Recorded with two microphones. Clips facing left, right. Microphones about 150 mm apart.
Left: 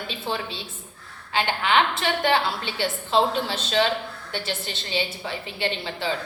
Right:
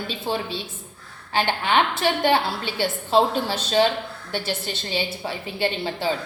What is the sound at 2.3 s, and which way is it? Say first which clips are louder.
A woman's voice: right 1 dB; 40° right (ahead or behind).